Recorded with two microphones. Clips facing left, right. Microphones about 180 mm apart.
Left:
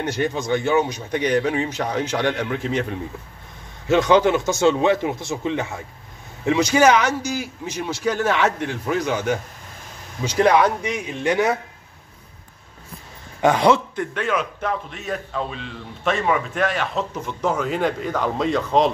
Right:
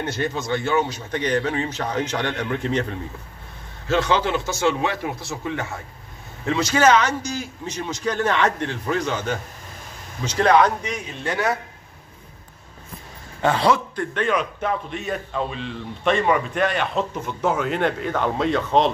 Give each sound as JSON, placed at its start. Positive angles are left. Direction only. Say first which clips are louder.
{"t": 0.0, "sound": "a man's voice", "louder": "left 2 dB", "side_deg": 15}
{"t": 13.4, "sound": "a man's voice", "louder": "left 3 dB", "side_deg": 15}
{"t": 14.1, "sound": "a man's voice", "louder": "right 2 dB", "side_deg": 5}